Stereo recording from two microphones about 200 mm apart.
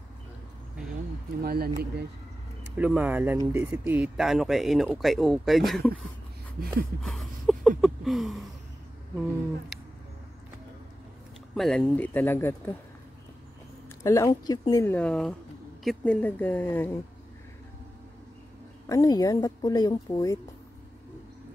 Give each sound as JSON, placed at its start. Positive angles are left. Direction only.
{"t": 1.4, "sound": "speech", "side_deg": -50}
{"t": 2.8, "sound": "speech", "side_deg": -10}
{"t": 7.0, "sound": "a sound", "side_deg": 0}
{"t": 11.5, "sound": "speech", "side_deg": 5}
{"t": 13.8, "sound": "speech", "side_deg": 15}
{"t": 18.9, "sound": "a woman's voice", "side_deg": 15}